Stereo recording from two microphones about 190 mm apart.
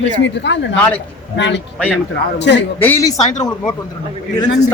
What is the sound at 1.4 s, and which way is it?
Speech, 70° left (ahead or behind).